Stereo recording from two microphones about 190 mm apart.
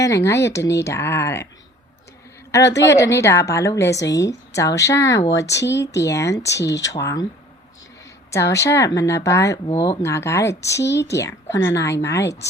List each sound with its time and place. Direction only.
0.0 s a woman's voice: 15° left (ahead or behind)
2.5 s a woman's voice: 15° left (ahead or behind)
8.3 s a woman's voice: 15° left (ahead or behind)